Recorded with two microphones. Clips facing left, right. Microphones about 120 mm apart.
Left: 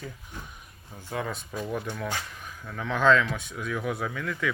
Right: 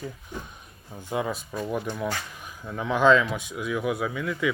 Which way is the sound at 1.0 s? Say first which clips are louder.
Right 4 dB; 15° right (ahead or behind).